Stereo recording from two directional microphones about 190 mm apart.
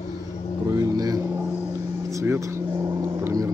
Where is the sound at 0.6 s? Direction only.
20° right (ahead or behind).